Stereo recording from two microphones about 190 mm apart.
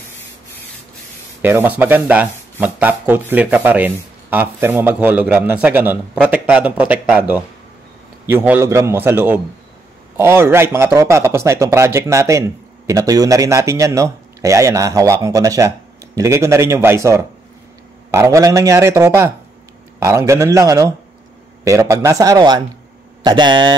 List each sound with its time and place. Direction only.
1.4 s a man's voice: 10° right (ahead or behind)